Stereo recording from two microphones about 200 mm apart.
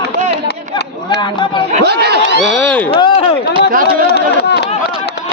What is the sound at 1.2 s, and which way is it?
Speech, 25° left (ahead or behind).